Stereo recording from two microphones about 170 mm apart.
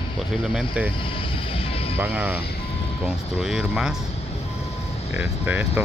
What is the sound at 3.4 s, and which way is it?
Speech, 5° right (ahead or behind).